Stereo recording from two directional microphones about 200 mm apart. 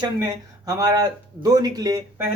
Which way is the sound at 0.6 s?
20° right (ahead or behind).